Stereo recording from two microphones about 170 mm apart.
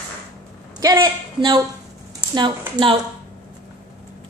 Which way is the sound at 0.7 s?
20° right (ahead or behind).